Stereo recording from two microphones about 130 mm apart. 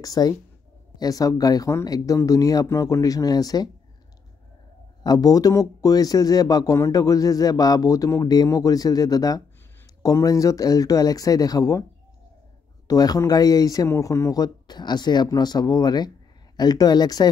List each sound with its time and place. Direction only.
0.0 s speech: 30° left (ahead or behind)
5.0 s speech: 30° left (ahead or behind)
12.8 s speech: 30° left (ahead or behind)